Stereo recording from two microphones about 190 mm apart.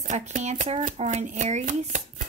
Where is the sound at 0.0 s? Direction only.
40° right (ahead or behind).